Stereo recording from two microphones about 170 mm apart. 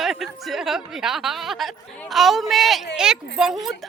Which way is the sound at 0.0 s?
Centre (ahead or behind).